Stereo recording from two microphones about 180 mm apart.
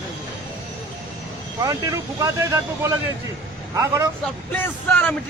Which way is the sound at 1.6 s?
20° right (ahead or behind).